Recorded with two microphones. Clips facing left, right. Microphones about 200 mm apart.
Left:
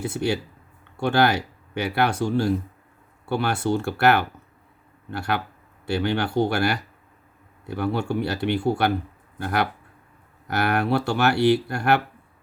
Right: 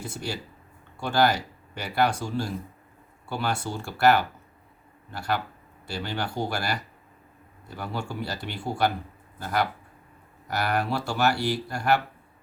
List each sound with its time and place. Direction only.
0.0 s speech: 65° left (ahead or behind)